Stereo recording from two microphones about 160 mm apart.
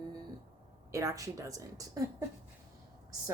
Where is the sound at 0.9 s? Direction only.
20° right (ahead or behind).